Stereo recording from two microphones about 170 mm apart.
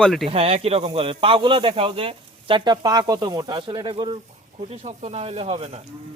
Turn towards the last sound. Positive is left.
turn(degrees=-35)  # may be behind; listen again after turning